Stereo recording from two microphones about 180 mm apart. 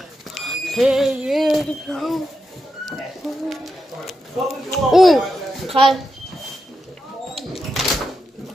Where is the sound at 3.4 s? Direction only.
Centre (ahead or behind).